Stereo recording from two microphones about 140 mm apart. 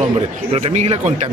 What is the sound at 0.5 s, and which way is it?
Speech, 55° right (ahead or behind).